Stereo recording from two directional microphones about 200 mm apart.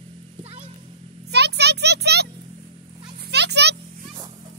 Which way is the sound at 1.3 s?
55° right (ahead or behind).